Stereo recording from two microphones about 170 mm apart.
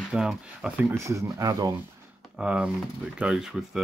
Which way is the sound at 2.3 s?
5° right (ahead or behind).